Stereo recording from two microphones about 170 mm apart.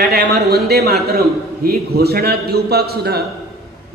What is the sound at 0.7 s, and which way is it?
A man's voice, 70° right (ahead or behind).